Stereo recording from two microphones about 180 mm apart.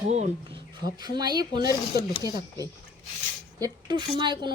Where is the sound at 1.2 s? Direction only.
25° right (ahead or behind).